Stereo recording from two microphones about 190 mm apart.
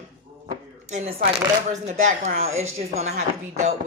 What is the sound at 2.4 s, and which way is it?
Speech, 35° right (ahead or behind).